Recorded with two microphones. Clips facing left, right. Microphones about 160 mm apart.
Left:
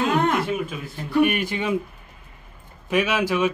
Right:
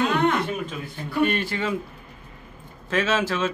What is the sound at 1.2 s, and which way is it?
Speech, 15° left (ahead or behind).